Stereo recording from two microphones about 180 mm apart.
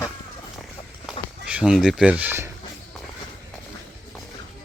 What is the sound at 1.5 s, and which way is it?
Speech, 5° right (ahead or behind).